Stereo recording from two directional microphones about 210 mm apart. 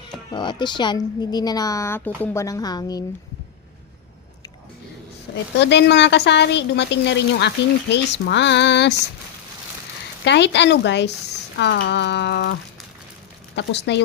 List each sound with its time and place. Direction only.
0.3 s a woman's voice: 20° left (ahead or behind)
5.5 s a woman's voice: 55° left (ahead or behind)
10.2 s a woman's voice: 55° left (ahead or behind)
13.6 s a woman's voice: 55° left (ahead or behind)